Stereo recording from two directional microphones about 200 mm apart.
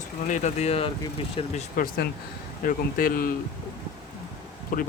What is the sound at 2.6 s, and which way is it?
Speech, 45° left (ahead or behind).